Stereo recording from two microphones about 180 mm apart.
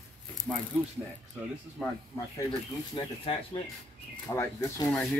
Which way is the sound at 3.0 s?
30° left (ahead or behind).